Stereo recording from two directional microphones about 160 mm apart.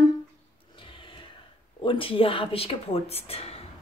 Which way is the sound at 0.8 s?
30° left (ahead or behind).